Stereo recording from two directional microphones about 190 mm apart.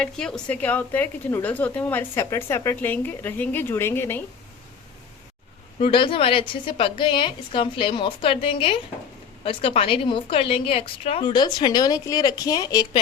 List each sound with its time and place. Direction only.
0.0 s speech: 5° left (ahead or behind)
5.8 s a woman's voice: 25° left (ahead or behind)